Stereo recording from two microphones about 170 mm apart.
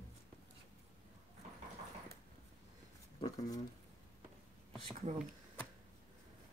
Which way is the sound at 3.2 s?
20° left (ahead or behind).